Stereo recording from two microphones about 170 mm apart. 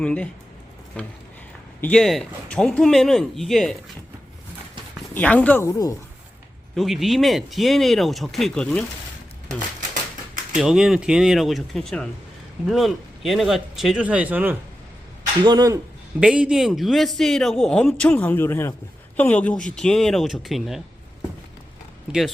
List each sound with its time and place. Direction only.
0.0 s a man's voice: 10° left (ahead or behind)
5.1 s speech: 10° left (ahead or behind)
6.7 s a man's voice: centre (ahead or behind)
10.6 s a man's voice: 5° right (ahead or behind)
15.4 s speech: 20° right (ahead or behind)
16.2 s a man's voice: 5° right (ahead or behind)